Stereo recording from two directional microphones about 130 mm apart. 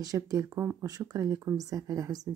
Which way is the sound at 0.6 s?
10° right (ahead or behind).